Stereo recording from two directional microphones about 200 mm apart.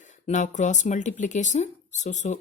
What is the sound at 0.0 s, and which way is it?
Speech, 35° left (ahead or behind).